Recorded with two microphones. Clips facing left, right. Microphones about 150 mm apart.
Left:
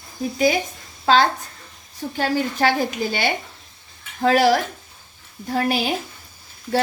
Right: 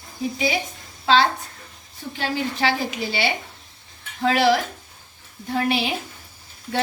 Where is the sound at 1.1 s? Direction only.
45° left (ahead or behind).